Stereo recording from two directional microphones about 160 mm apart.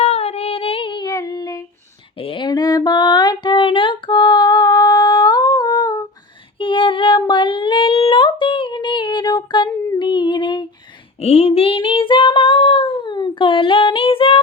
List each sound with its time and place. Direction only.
0.0 s singing: 40° left (ahead or behind); by 1.6 s 25° left (ahead or behind)
2.1 s a sound: 35° left (ahead or behind)
6.6 s female singing: 30° left (ahead or behind)
7.2 s child singing: 30° left (ahead or behind)
10.0 s a sound: 30° left (ahead or behind)
11.2 s female singing: 40° left (ahead or behind)